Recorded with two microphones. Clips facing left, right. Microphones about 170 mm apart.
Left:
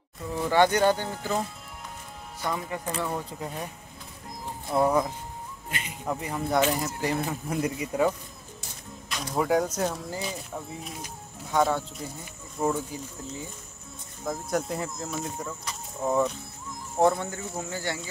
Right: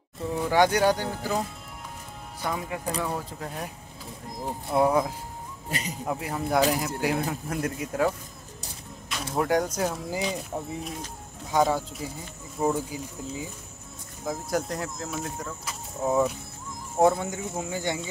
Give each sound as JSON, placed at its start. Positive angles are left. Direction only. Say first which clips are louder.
{"t": 0.5, "sound": "speech", "louder": "even", "side_deg": -10}
{"t": 2.4, "sound": "speech", "louder": "even", "side_deg": -10}
{"t": 3.3, "sound": "speech", "louder": "even", "side_deg": 0}
{"t": 5.7, "sound": "speech", "louder": "right 5 dB", "side_deg": -40}
{"t": 6.0, "sound": "speech", "louder": "left 1 dB", "side_deg": -5}
{"t": 9.1, "sound": "speech", "louder": "even", "side_deg": 0}
{"t": 11.5, "sound": "speech", "louder": "right 1 dB", "side_deg": -5}
{"t": 16.0, "sound": "speech", "louder": "right 1 dB", "side_deg": -10}